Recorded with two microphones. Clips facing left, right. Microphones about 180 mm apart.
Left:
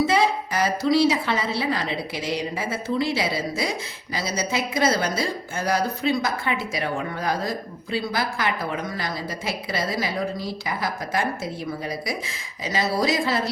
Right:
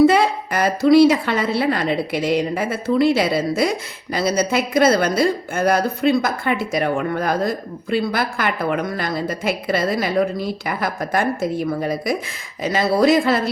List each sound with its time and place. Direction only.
0.0 s a woman's voice: 60° right (ahead or behind)